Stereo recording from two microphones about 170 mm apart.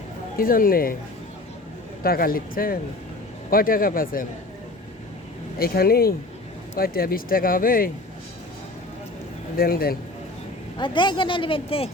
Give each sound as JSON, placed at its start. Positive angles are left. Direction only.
{"t": 0.3, "sound": "speech", "side_deg": 55}
{"t": 2.0, "sound": "speech", "side_deg": 60}
{"t": 5.5, "sound": "speech", "side_deg": 60}
{"t": 9.6, "sound": "speech", "side_deg": 60}
{"t": 10.8, "sound": "speech", "side_deg": 30}